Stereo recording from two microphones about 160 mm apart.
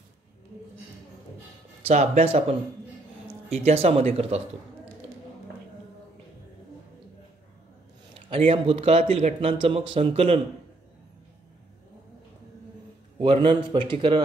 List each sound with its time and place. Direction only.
1.9 s speech: 45° right (ahead or behind)
8.5 s speech: 35° right (ahead or behind)
13.2 s speech: 30° right (ahead or behind)